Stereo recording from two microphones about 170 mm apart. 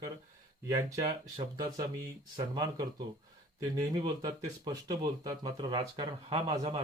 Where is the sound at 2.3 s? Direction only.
25° right (ahead or behind).